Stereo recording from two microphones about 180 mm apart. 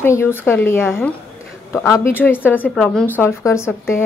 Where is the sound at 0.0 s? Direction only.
15° left (ahead or behind).